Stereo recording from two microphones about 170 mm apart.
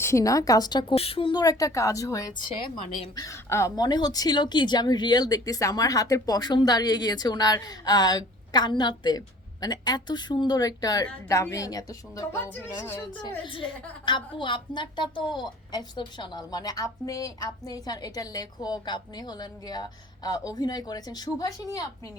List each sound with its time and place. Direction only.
0.0 s a woman's voice: 15° left (ahead or behind)
13.4 s speech: 30° left (ahead or behind)